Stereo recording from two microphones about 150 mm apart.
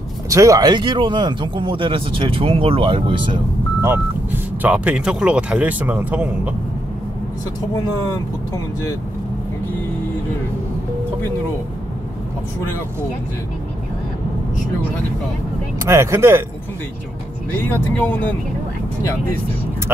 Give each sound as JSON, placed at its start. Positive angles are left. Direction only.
{"t": 0.3, "sound": "a man's voice", "side_deg": -20}
{"t": 3.8, "sound": "speech", "side_deg": -15}
{"t": 15.8, "sound": "speech", "side_deg": -20}